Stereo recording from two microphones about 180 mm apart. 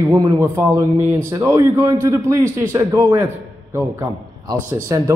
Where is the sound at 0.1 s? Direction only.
20° right (ahead or behind).